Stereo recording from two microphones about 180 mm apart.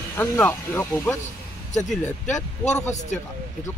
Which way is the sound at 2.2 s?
40° left (ahead or behind).